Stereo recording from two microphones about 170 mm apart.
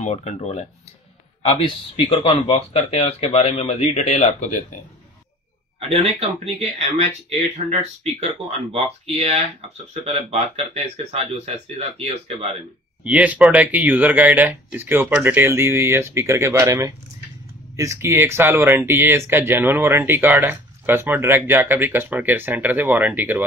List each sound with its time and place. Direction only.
0.0 s speech: 40° left (ahead or behind)
2.0 s speech: 35° left (ahead or behind)
6.0 s speech: 35° right (ahead or behind)
13.0 s speech: 10° right (ahead or behind)